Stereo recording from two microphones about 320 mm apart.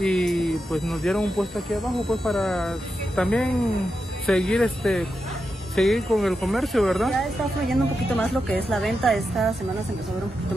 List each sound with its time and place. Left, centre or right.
0.0 s speech: centre